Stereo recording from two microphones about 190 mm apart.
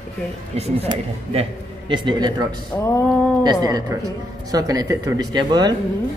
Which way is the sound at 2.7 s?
15° left (ahead or behind).